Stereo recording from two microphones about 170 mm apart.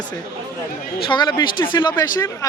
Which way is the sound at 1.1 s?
25° left (ahead or behind).